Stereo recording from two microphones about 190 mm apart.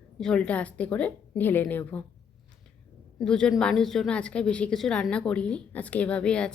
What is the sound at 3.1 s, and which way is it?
A woman's voice, 5° left (ahead or behind).